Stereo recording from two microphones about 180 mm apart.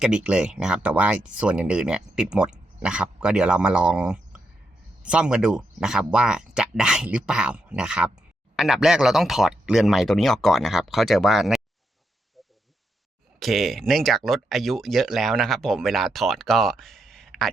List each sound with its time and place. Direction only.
0.0 s speech: 5° right (ahead or behind)
13.4 s speech: centre (ahead or behind)